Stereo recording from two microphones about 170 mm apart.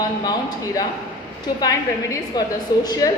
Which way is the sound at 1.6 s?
20° left (ahead or behind).